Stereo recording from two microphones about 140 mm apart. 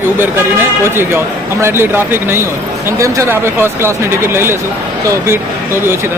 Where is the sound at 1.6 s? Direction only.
15° right (ahead or behind).